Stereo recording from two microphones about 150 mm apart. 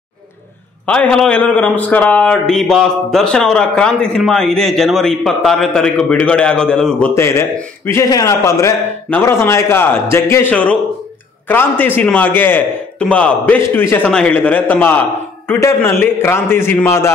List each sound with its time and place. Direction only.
0.8 s a man's voice: 10° left (ahead or behind)
7.2 s a man's voice: 20° left (ahead or behind)